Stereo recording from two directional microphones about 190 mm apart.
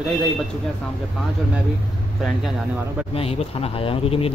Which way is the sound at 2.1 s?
Centre (ahead or behind).